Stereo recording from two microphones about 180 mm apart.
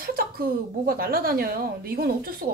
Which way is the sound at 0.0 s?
55° right (ahead or behind).